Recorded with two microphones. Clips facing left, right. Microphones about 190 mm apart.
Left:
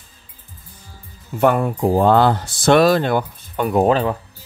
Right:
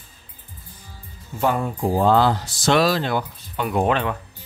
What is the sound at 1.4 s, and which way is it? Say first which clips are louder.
Speech: left 5 dB; 60° left (ahead or behind).